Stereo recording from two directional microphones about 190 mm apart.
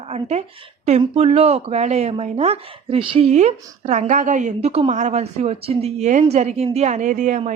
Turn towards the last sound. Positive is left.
turn(degrees=-40)  # may be behind; listen again after turning